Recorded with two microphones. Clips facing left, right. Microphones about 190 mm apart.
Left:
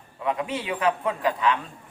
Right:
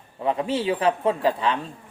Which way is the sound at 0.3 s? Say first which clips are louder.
Right 4 dB; 30° right (ahead or behind).